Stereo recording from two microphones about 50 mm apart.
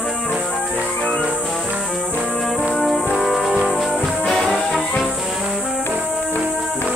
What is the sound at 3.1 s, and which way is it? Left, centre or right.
Music, centre.